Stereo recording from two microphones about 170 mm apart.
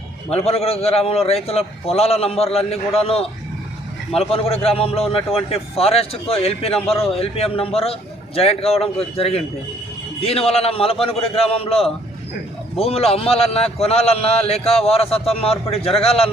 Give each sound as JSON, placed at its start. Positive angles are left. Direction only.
{"t": 0.3, "sound": "a man's voice", "side_deg": 35}